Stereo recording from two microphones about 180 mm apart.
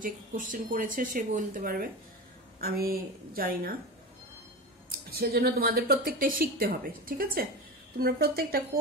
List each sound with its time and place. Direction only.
0.0 s speech: 50° right (ahead or behind)
2.9 s speech: 55° right (ahead or behind)
5.2 s speech: 60° right (ahead or behind)